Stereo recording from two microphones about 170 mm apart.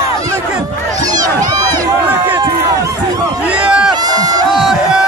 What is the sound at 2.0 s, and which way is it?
Run, 10° right (ahead or behind).